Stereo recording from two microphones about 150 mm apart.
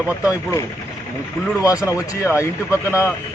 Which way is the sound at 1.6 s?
20° left (ahead or behind).